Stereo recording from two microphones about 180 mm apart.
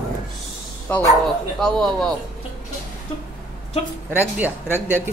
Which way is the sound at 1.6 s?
5° left (ahead or behind).